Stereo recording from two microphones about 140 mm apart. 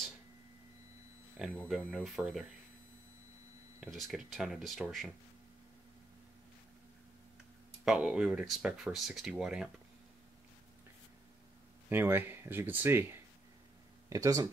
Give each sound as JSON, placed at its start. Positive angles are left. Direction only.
{"t": 1.4, "sound": "speech", "side_deg": -5}
{"t": 1.8, "sound": "speech", "side_deg": 10}
{"t": 2.0, "sound": "speech", "side_deg": 0}
{"t": 3.8, "sound": "speech", "side_deg": 0}
{"t": 7.8, "sound": "speech", "side_deg": -5}
{"t": 11.9, "sound": "speech", "side_deg": -15}